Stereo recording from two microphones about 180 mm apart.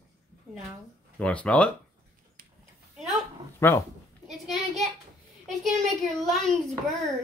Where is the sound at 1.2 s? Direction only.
5° left (ahead or behind).